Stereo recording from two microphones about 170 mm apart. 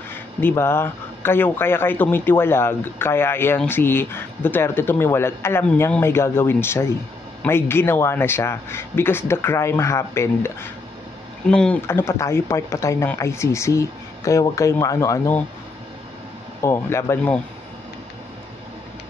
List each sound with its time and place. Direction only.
0.4 s speech: 15° left (ahead or behind)
16.6 s speech: 15° left (ahead or behind)